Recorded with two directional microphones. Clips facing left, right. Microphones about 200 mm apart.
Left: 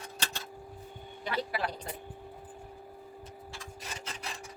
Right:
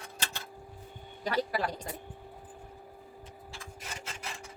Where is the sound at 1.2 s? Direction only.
40° right (ahead or behind).